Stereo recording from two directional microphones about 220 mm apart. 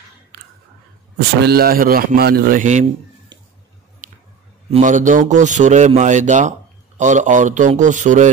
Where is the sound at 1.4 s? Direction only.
45° right (ahead or behind).